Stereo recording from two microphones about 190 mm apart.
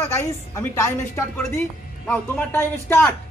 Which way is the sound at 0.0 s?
15° left (ahead or behind).